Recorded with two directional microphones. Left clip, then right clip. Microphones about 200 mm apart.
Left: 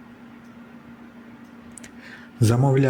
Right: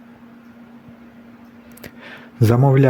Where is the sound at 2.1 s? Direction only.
25° right (ahead or behind).